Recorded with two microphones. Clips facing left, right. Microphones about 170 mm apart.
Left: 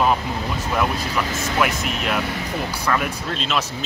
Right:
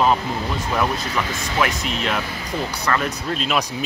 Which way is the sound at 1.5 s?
5° left (ahead or behind).